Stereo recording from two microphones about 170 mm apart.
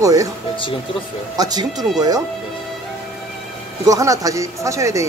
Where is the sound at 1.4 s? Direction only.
25° right (ahead or behind).